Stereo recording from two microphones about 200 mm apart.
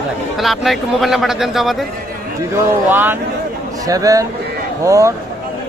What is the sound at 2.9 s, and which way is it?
Speech, 10° right (ahead or behind).